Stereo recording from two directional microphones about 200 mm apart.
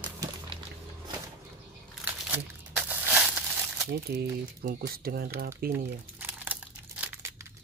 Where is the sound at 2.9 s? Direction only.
10° right (ahead or behind).